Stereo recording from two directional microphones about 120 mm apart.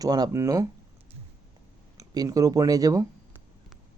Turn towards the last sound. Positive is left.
turn(degrees=-30)  # may be behind; listen again after turning